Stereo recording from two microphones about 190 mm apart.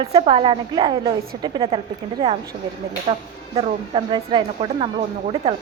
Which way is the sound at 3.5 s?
25° right (ahead or behind).